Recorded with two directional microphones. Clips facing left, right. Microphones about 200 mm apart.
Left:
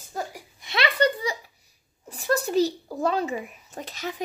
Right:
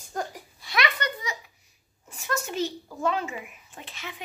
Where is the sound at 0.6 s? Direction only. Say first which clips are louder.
Left 6 dB; 25° left (ahead or behind).